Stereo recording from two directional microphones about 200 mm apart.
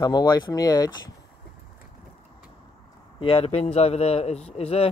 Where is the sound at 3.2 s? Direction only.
30° left (ahead or behind).